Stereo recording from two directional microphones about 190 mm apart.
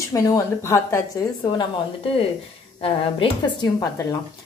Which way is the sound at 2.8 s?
25° left (ahead or behind).